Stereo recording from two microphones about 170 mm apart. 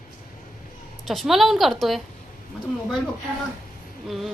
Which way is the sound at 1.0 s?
Centre (ahead or behind).